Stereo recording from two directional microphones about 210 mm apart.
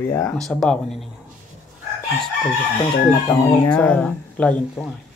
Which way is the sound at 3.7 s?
5° left (ahead or behind).